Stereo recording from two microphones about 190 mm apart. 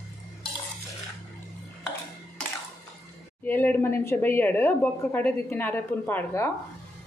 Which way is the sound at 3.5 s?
10° left (ahead or behind).